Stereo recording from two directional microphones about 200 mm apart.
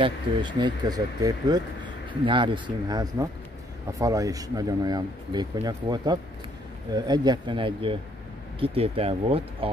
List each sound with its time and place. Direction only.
0.0 s speech: 25° right (ahead or behind)